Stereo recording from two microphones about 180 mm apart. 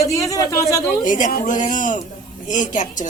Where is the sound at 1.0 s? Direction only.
45° left (ahead or behind).